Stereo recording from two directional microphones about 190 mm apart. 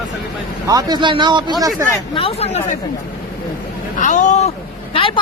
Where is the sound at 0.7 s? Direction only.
20° right (ahead or behind).